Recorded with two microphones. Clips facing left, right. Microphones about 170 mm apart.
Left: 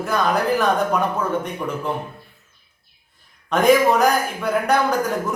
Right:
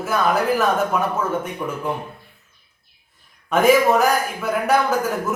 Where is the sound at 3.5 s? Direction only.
5° right (ahead or behind).